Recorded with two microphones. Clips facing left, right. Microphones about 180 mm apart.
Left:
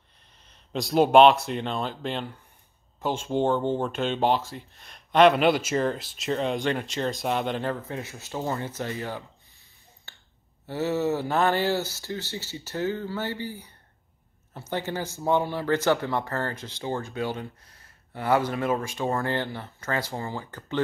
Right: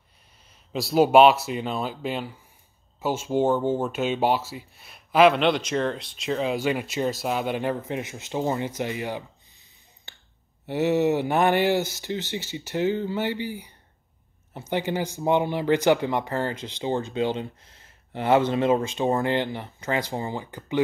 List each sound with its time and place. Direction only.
0.5 s speech: 5° right (ahead or behind)
10.7 s speech: 20° right (ahead or behind)